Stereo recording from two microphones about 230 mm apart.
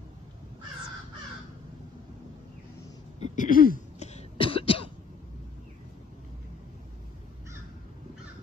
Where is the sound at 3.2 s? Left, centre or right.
Left.